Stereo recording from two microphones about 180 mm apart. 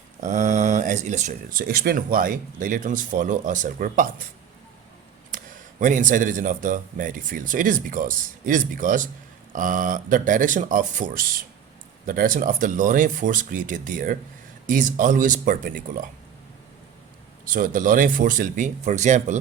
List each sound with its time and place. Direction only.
0.2 s speech: 40° right (ahead or behind)
1.6 s speech: 60° right (ahead or behind)
5.8 s speech: 45° right (ahead or behind)
17.4 s speech: 50° right (ahead or behind)